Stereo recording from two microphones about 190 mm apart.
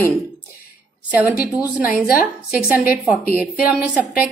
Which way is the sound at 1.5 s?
10° right (ahead or behind).